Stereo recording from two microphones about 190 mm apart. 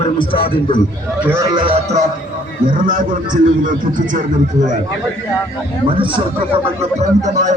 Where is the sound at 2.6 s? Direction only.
45° right (ahead or behind).